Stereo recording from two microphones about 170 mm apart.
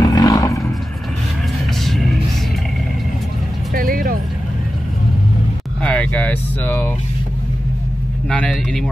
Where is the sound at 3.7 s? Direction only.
60° right (ahead or behind).